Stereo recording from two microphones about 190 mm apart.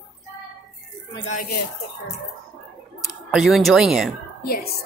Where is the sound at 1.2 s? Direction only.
50° left (ahead or behind).